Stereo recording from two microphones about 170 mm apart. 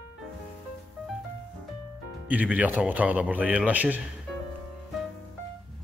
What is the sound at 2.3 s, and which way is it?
Speech, 10° right (ahead or behind).